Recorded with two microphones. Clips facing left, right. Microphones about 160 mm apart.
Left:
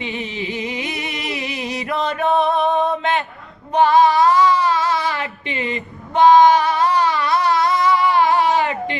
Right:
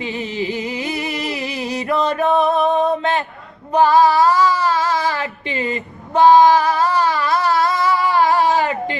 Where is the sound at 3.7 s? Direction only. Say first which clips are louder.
Right 1 dB; 35° right (ahead or behind).